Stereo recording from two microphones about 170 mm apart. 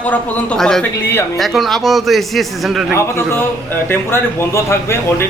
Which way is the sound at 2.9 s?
15° left (ahead or behind).